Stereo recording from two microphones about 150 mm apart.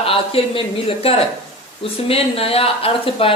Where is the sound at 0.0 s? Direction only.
40° left (ahead or behind).